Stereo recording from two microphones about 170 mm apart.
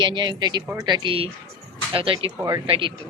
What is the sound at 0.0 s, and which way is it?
Speech, 25° right (ahead or behind).